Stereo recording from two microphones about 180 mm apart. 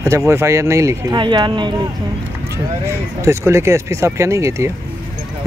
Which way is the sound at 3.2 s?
15° right (ahead or behind).